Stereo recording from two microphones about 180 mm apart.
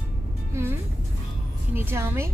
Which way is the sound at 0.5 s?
15° right (ahead or behind).